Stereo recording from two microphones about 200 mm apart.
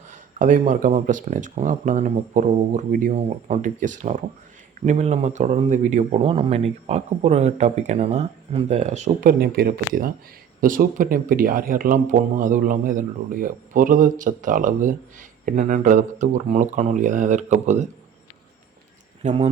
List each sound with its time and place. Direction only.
0.1 s speech: 40° right (ahead or behind)
9.4 s speech: 50° right (ahead or behind)
19.2 s speech: 35° right (ahead or behind)